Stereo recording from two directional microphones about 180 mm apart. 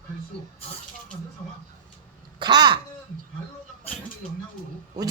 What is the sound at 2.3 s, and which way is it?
Speech, 25° right (ahead or behind).